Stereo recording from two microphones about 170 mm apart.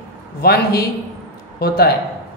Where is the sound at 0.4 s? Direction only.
65° left (ahead or behind).